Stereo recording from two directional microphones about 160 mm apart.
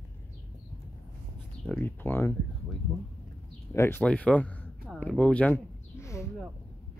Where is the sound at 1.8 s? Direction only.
15° left (ahead or behind).